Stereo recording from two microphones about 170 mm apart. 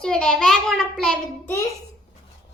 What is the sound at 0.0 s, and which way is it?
A child's voice, 5° left (ahead or behind).